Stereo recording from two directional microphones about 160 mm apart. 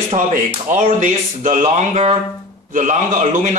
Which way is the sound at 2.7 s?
55° right (ahead or behind).